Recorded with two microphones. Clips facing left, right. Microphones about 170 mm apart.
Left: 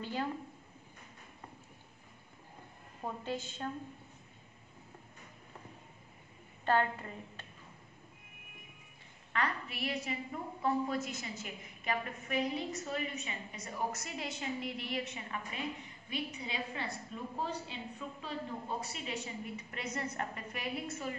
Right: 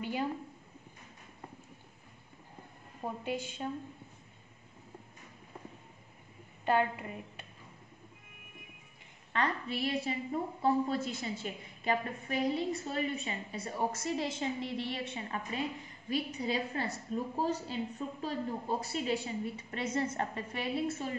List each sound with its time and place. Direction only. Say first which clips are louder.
0.0 s a woman's voice: right 3 dB; 15° right (ahead or behind)
3.3 s a woman's voice: right 3 dB; 10° right (ahead or behind)
6.6 s a woman's voice: right 1 dB; 15° right (ahead or behind)
9.3 s a woman's voice: right 3 dB; 30° right (ahead or behind)